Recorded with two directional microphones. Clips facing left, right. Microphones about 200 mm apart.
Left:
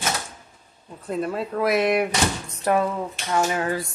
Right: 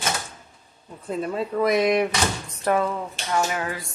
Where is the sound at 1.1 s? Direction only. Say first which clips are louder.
Even; centre (ahead or behind).